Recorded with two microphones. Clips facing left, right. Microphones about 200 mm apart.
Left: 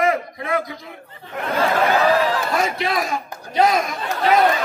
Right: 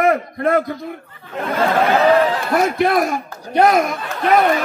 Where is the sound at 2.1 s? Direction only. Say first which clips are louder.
Right 4 dB; 60° right (ahead or behind).